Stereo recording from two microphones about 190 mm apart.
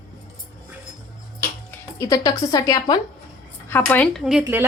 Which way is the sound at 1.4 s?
15° left (ahead or behind).